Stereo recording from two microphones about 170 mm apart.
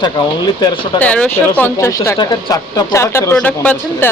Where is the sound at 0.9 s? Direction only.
10° left (ahead or behind).